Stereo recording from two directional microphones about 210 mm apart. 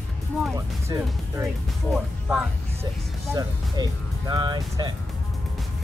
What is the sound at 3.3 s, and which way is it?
Speech, 15° right (ahead or behind).